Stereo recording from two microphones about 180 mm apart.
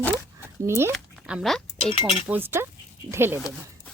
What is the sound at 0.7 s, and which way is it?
Speech, 15° right (ahead or behind).